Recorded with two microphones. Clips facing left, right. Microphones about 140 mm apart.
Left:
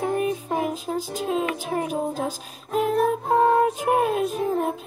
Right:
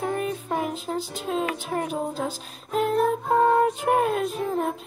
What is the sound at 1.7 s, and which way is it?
Speech, 5° left (ahead or behind).